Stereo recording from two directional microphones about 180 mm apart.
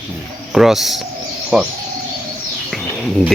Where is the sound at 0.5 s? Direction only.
Centre (ahead or behind).